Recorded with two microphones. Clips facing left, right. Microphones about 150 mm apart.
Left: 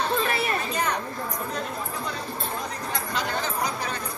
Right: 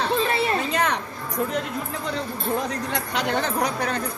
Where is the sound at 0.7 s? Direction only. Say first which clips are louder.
Right 4 dB; 90° right.